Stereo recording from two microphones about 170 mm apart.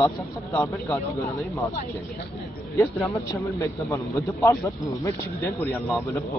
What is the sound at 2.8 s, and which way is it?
Speech, 20° left (ahead or behind).